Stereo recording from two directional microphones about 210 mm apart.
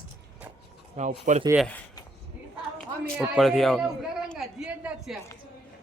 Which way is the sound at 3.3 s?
Centre (ahead or behind).